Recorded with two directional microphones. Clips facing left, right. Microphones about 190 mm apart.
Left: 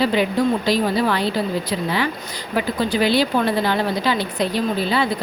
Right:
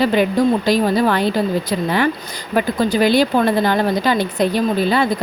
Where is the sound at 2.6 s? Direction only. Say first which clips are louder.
Right 4 dB; 45° right (ahead or behind).